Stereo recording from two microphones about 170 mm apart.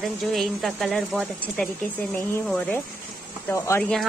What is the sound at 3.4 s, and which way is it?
Speech, 15° left (ahead or behind).